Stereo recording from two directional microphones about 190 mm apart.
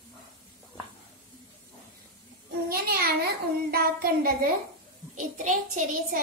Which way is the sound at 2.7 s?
55° right (ahead or behind).